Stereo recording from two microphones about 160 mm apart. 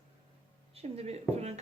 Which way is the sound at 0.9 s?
45° right (ahead or behind).